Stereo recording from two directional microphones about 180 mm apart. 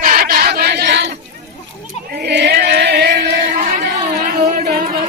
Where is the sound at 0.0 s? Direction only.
55° right (ahead or behind); by 1.0 s 70° right (ahead or behind).